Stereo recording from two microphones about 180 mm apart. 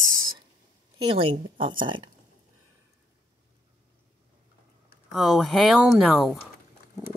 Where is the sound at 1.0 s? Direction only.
30° right (ahead or behind).